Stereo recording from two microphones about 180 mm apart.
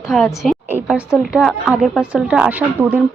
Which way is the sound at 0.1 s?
Centre (ahead or behind).